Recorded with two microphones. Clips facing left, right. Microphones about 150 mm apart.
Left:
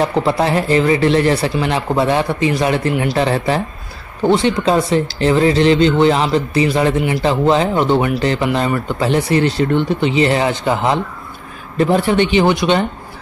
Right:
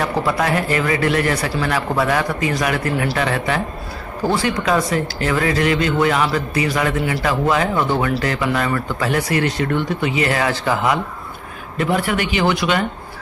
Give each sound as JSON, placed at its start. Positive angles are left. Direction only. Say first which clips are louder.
{"t": 0.0, "sound": "speech", "louder": "left 4 dB", "side_deg": 25}
{"t": 3.2, "sound": "speech", "louder": "left 4 dB", "side_deg": 30}